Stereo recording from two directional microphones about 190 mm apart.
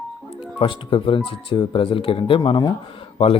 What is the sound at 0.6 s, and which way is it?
Speech, 25° left (ahead or behind).